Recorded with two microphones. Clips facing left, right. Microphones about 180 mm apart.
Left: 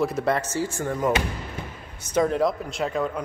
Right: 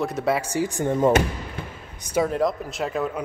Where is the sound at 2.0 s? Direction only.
5° right (ahead or behind).